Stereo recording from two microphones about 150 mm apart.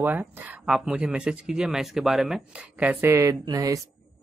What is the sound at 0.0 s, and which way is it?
Speech, 10° right (ahead or behind).